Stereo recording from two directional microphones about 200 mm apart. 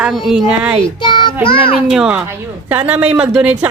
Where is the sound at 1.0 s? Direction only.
25° left (ahead or behind).